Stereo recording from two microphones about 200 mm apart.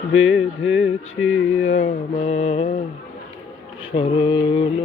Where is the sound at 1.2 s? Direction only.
90° left.